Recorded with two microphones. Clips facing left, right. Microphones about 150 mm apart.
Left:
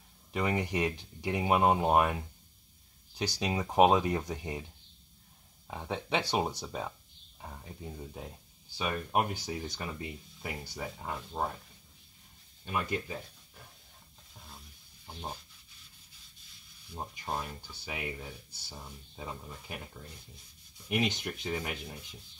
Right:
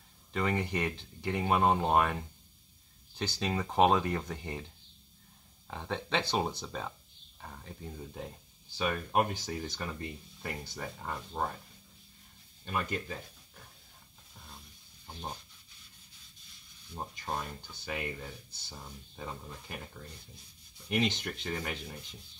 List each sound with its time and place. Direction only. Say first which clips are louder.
0.3 s speech: left 1 dB; 15° left (ahead or behind)
5.7 s speech: left 1 dB; 10° left (ahead or behind)
12.6 s speech: left 1 dB; 10° left (ahead or behind)
16.9 s speech: even; 10° left (ahead or behind)
20.9 s speech: even; 10° left (ahead or behind)